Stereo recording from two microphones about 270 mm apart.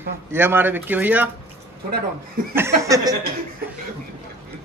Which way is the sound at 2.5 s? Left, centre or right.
Centre.